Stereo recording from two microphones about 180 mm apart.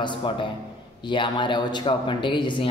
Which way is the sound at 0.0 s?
25° left (ahead or behind).